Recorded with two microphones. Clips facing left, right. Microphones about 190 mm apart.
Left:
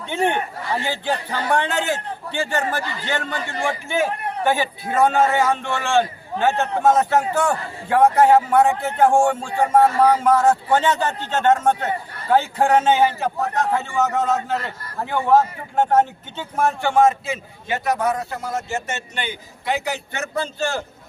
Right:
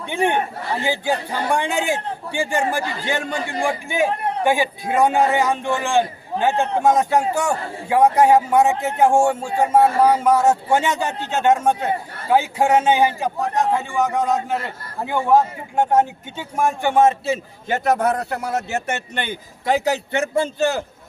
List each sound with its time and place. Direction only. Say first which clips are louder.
0.0 s a man's voice: right 1 dB; 15° right (ahead or behind)
17.1 s a man's voice: right 2 dB; 30° right (ahead or behind)
17.7 s a man's voice: right 3 dB; 50° right (ahead or behind); by 20.8 s 20° right (ahead or behind)